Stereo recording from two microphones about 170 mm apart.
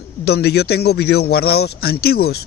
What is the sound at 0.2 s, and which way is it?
Speech, 75° left (ahead or behind).